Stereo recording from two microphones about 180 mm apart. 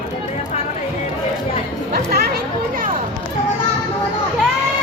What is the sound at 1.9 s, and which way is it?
Chatter, 60° right (ahead or behind).